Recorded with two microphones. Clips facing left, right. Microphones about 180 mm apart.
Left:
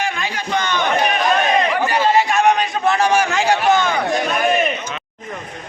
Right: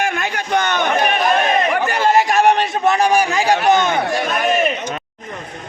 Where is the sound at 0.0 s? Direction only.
50° right (ahead or behind).